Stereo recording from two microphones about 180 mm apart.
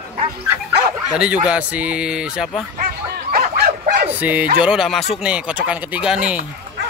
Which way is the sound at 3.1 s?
55° right (ahead or behind).